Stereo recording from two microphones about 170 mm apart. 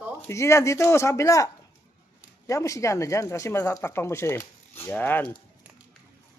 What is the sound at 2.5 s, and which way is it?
Speech, 20° left (ahead or behind).